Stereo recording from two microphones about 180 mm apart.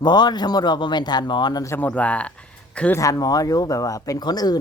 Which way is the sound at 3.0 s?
20° left (ahead or behind).